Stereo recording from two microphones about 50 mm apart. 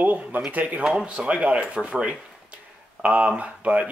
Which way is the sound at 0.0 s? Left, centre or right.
Right.